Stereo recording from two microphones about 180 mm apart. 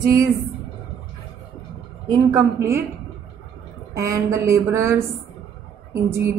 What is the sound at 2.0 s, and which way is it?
Speech, 15° right (ahead or behind).